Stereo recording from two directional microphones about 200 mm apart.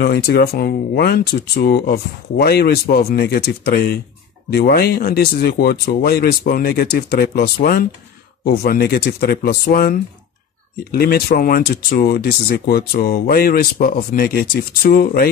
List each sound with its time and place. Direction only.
0.0 s speech: 55° left (ahead or behind)